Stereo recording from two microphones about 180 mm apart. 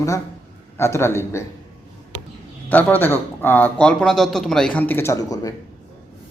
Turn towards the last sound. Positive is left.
turn(degrees=20)  # may be behind; listen again after turning